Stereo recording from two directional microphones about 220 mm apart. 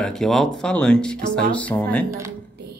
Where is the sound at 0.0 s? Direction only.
Centre (ahead or behind).